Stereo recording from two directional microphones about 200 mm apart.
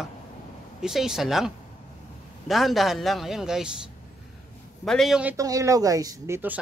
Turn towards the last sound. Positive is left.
turn(degrees=-10)  # may be behind; listen again after turning